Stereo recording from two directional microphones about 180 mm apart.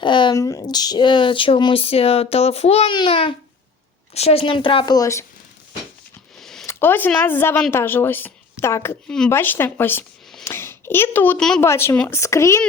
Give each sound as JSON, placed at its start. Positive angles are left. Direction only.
{"t": 0.0, "sound": "speech", "side_deg": 25}
{"t": 6.4, "sound": "a sound", "side_deg": 0}
{"t": 6.7, "sound": "a woman's voice", "side_deg": 10}
{"t": 11.6, "sound": "speech", "side_deg": 15}